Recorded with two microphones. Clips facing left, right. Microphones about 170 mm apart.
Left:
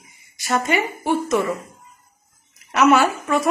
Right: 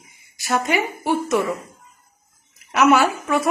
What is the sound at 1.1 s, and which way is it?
Speech, 15° right (ahead or behind).